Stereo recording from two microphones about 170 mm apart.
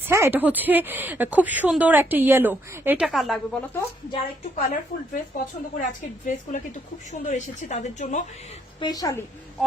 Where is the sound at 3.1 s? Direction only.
Centre (ahead or behind).